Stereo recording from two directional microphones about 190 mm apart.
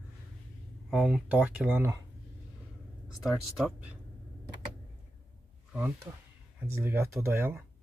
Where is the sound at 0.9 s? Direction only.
5° right (ahead or behind).